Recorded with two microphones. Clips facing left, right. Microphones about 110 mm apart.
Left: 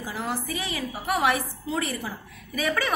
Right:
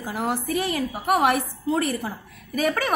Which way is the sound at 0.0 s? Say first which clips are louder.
Right 4 dB; 55° right (ahead or behind).